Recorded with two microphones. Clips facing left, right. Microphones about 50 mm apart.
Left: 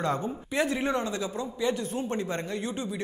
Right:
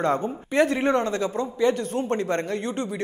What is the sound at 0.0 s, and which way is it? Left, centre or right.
Speech, right.